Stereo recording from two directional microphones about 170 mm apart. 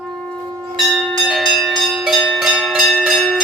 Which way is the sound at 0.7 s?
Centre (ahead or behind).